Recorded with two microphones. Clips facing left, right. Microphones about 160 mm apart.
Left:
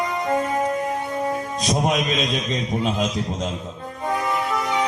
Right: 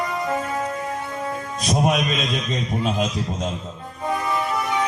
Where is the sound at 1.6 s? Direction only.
Centre (ahead or behind).